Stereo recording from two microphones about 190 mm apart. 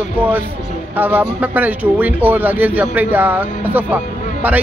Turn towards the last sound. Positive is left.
turn(degrees=-10)  # may be behind; listen again after turning